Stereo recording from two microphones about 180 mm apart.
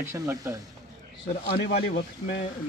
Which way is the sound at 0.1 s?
15° right (ahead or behind).